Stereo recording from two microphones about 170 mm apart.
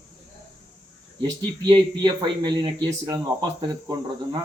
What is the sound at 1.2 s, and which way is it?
Speech, 25° right (ahead or behind).